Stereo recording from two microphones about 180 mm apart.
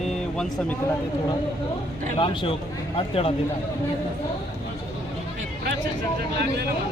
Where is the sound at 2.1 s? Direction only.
30° left (ahead or behind).